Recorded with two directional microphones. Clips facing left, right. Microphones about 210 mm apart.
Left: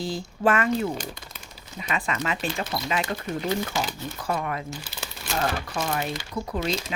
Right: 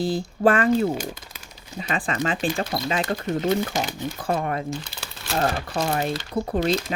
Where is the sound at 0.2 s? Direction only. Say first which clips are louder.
Right 2 dB; 35° right (ahead or behind).